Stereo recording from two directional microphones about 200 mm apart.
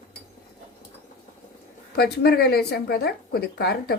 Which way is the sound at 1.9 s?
50° left (ahead or behind).